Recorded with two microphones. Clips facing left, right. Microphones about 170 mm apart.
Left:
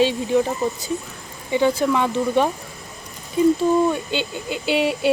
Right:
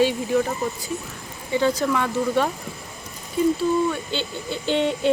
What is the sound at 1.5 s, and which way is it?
Speech, 15° left (ahead or behind).